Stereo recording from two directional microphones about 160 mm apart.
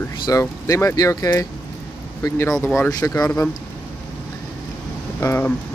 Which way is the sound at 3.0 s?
20° left (ahead or behind).